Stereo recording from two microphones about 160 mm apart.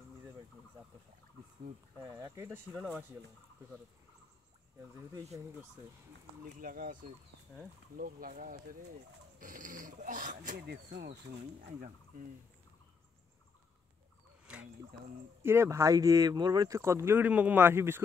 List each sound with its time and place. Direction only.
2.0 s speech: 20° right (ahead or behind)
6.5 s speech: 60° right (ahead or behind)
8.0 s speech: 60° right (ahead or behind)
10.6 s fowl: 90° right; by 12.3 s 60° right (ahead or behind)
14.4 s a sound: 5° right (ahead or behind)
15.4 s speech: 15° right (ahead or behind)